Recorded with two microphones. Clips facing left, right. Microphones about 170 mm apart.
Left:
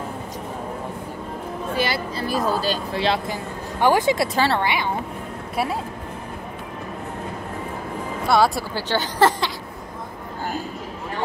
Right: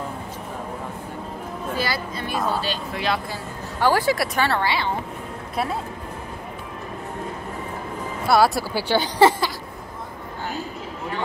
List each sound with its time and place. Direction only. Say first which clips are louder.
1.8 s speech: left 4 dB; 25° left (ahead or behind)
2.2 s speech: left 3 dB; 40° left (ahead or behind); by 4.9 s 15° left (ahead or behind)
8.3 s speech: right 1 dB; 5° right (ahead or behind)